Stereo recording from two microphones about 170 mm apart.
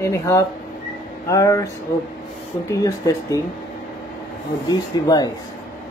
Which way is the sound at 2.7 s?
20° left (ahead or behind).